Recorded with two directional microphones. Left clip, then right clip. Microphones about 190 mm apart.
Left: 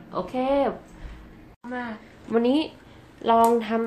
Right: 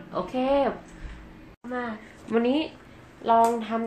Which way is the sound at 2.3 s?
30° left (ahead or behind).